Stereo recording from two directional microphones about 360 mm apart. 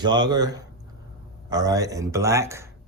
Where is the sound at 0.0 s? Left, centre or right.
Centre.